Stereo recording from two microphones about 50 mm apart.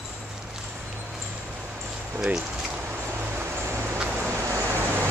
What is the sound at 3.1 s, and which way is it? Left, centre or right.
Vehicle, right.